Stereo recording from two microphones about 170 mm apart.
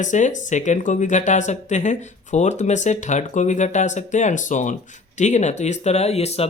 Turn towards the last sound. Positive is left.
turn(degrees=40)  # may be behind; listen again after turning